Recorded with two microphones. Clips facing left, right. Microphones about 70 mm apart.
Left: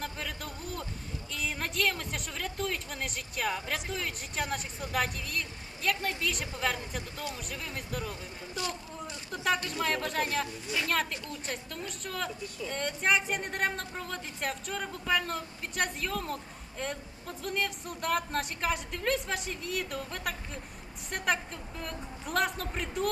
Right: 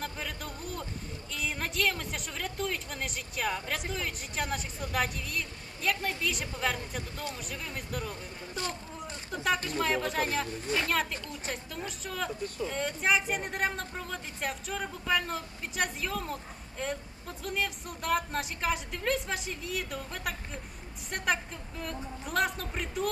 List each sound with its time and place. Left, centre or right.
0.0 s a sound: centre
1.3 s a woman's voice: centre
8.5 s vehicle: right
9.3 s a woman's voice: centre